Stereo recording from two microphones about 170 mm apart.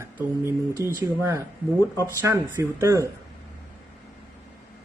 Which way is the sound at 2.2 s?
15° right (ahead or behind).